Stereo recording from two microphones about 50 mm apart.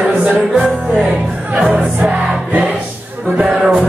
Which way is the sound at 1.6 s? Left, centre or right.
Right.